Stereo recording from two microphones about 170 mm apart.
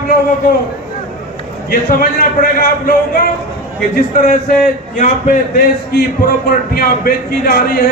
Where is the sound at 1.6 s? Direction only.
60° left (ahead or behind).